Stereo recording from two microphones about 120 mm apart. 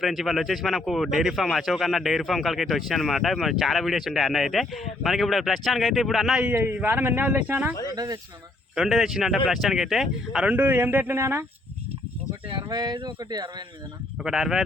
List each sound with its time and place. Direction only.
0.0 s speech: centre (ahead or behind)
6.5 s speech: 15° right (ahead or behind)
7.9 s speech: 30° right (ahead or behind)
8.7 s speech: centre (ahead or behind); by 11.4 s 20° right (ahead or behind)
12.5 s speech: 40° right (ahead or behind)
14.3 s speech: 5° right (ahead or behind)